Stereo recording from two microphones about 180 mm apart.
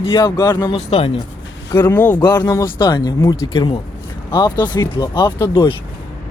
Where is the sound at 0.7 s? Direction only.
35° left (ahead or behind).